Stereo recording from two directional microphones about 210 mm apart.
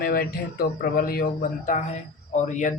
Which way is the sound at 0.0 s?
45° left (ahead or behind).